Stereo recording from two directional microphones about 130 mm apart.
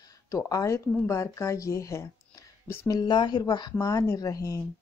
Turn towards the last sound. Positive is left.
turn(degrees=25)  # may be behind; listen again after turning